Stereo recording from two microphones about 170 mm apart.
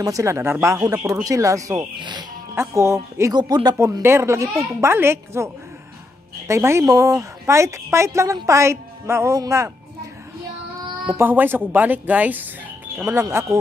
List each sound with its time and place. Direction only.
0.0 s a woman's voice: 20° right (ahead or behind)
2.5 s a woman's voice: 15° right (ahead or behind)
11.1 s a woman's voice: 10° right (ahead or behind)